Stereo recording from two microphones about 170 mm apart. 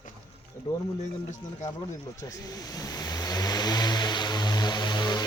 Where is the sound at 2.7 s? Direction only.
20° left (ahead or behind).